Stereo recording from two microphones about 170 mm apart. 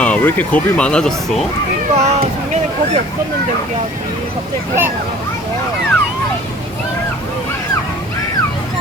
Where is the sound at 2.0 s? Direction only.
45° right (ahead or behind).